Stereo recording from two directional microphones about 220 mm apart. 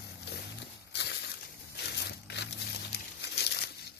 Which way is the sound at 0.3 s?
50° left (ahead or behind).